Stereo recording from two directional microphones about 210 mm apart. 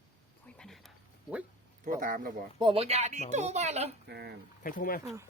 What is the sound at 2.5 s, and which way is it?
Speech, 25° right (ahead or behind).